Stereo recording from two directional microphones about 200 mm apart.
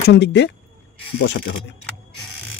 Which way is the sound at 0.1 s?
60° left (ahead or behind).